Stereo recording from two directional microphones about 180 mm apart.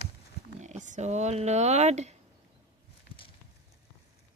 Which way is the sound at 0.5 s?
40° right (ahead or behind).